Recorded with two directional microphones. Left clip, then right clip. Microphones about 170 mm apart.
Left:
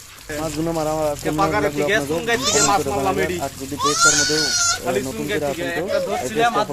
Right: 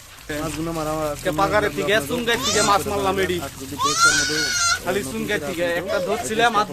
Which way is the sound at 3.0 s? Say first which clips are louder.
Left 1 dB; 45° right (ahead or behind).